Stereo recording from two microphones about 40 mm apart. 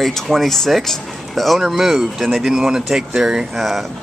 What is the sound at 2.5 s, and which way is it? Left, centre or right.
Speech, centre.